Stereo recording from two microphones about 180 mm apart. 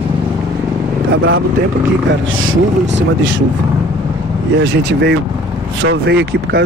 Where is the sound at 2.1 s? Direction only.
90° right.